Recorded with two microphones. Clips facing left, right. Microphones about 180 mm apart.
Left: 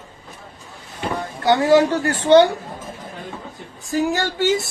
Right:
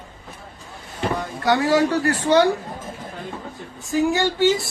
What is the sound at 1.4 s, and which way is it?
A woman's voice, 30° left (ahead or behind).